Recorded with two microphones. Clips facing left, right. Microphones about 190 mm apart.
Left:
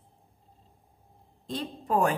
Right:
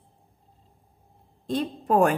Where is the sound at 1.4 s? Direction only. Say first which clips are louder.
Right 7 dB; 55° right (ahead or behind).